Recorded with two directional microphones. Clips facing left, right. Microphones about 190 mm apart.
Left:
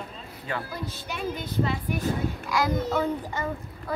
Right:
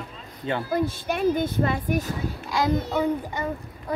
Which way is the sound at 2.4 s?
25° right (ahead or behind).